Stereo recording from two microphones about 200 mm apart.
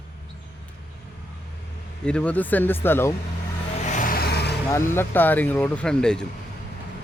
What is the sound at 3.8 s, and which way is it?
Vehicle, 40° left (ahead or behind).